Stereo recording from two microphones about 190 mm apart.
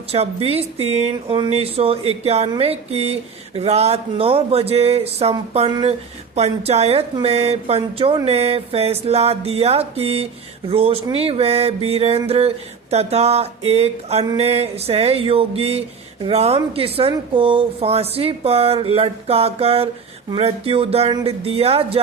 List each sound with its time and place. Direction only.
0.1 s a woman's voice: 30° right (ahead or behind)
6.3 s a woman's voice: 35° right (ahead or behind)